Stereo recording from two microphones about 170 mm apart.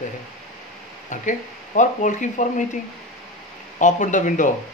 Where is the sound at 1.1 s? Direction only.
50° left (ahead or behind).